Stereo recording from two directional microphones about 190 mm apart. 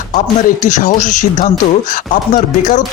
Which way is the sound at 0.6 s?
40° left (ahead or behind).